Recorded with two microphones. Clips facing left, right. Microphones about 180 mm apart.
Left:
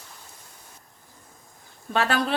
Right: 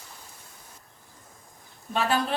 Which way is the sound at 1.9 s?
90° left.